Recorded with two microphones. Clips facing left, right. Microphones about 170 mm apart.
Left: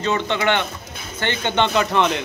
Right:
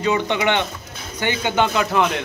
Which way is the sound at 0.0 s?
15° right (ahead or behind).